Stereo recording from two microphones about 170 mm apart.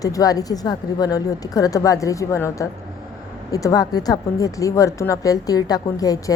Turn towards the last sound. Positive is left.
turn(degrees=20)  # may be behind; listen again after turning